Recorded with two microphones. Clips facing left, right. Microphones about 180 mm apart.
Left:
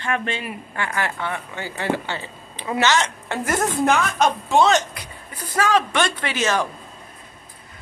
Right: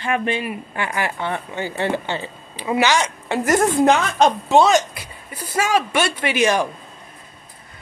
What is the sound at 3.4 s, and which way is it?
Speech, 50° right (ahead or behind).